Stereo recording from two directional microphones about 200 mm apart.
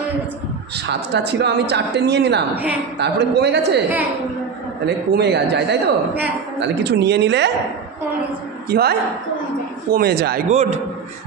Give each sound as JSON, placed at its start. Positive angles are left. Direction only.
{"t": 0.7, "sound": "a woman's voice", "side_deg": -55}
{"t": 2.5, "sound": "a woman's voice", "side_deg": -10}
{"t": 3.0, "sound": "a woman's voice", "side_deg": -55}
{"t": 4.8, "sound": "a woman's voice", "side_deg": -55}
{"t": 8.6, "sound": "speech", "side_deg": -50}
{"t": 9.9, "sound": "speech", "side_deg": -55}
{"t": 10.5, "sound": "a man's voice", "side_deg": -35}